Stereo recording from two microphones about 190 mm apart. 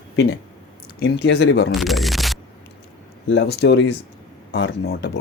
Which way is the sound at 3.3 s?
65° left (ahead or behind).